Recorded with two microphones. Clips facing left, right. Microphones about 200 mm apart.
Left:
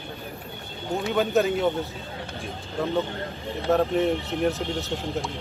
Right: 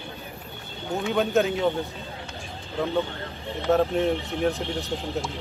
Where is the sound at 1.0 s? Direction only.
Centre (ahead or behind).